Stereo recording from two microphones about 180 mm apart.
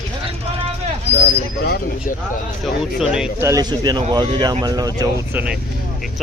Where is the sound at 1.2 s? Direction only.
60° left (ahead or behind).